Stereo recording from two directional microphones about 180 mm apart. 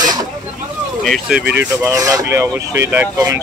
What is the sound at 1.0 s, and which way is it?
Speech, centre (ahead or behind).